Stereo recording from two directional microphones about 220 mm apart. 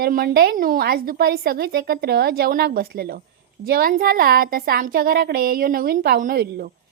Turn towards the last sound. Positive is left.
turn(degrees=-45)  # may be behind; listen again after turning